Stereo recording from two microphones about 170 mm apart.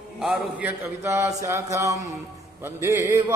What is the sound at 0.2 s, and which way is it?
Speech, 5° right (ahead or behind).